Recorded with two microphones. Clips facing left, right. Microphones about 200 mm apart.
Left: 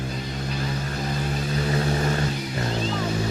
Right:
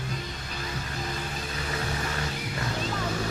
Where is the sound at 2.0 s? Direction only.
35° left (ahead or behind).